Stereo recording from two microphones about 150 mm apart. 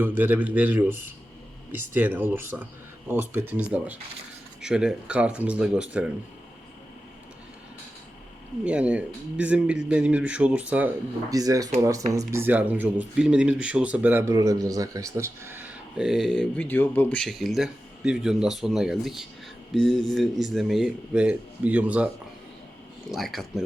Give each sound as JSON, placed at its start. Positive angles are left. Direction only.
{"t": 0.0, "sound": "a man's voice", "side_deg": -10}
{"t": 8.6, "sound": "a man's voice", "side_deg": -5}
{"t": 11.3, "sound": "speech", "side_deg": -25}
{"t": 23.1, "sound": "speech", "side_deg": 0}